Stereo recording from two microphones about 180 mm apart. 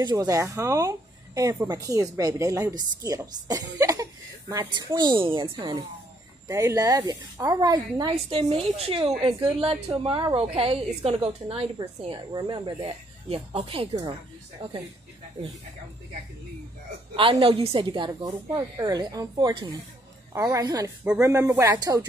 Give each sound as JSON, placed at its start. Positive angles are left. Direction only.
{"t": 0.0, "sound": "a woman's voice", "side_deg": -20}
{"t": 17.1, "sound": "speech", "side_deg": -30}